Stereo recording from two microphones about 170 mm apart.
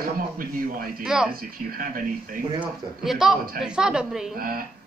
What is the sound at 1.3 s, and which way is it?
Speech, 60° right (ahead or behind).